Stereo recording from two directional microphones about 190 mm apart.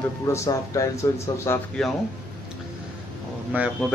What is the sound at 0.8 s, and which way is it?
Speech, 15° left (ahead or behind).